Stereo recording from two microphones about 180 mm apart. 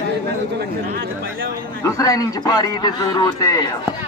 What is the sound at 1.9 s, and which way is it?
A man's voice, 20° left (ahead or behind).